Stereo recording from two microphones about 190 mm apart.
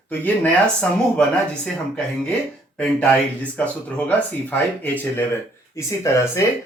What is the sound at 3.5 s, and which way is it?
Speech, 10° left (ahead or behind).